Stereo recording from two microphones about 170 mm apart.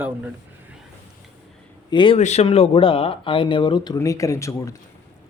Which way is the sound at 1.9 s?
30° left (ahead or behind).